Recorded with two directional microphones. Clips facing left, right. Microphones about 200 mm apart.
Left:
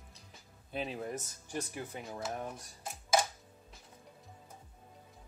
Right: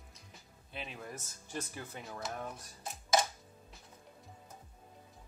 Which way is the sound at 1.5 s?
15° left (ahead or behind).